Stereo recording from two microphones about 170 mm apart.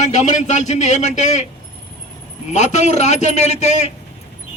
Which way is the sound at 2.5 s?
45° left (ahead or behind).